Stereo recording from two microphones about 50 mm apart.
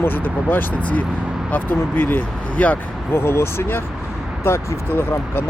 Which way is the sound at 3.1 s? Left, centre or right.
Left.